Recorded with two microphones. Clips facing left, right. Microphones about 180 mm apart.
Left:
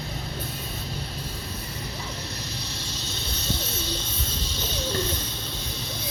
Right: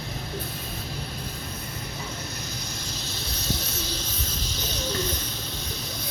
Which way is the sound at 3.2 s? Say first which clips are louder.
Even; 30° left (ahead or behind).